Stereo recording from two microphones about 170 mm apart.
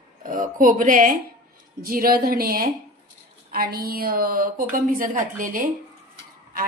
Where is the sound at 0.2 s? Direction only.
50° right (ahead or behind).